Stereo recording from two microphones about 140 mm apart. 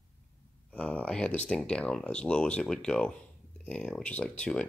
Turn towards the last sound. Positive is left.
turn(degrees=5)  # may be behind; listen again after turning